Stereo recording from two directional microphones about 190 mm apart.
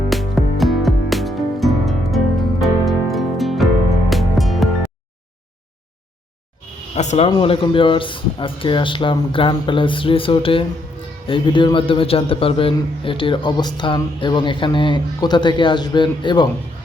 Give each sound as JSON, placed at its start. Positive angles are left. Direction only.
{"t": 0.1, "sound": "music", "side_deg": 0}
{"t": 6.9, "sound": "a man's voice", "side_deg": 35}